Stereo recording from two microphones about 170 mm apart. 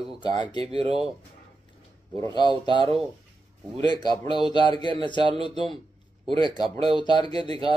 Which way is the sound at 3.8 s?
25° left (ahead or behind).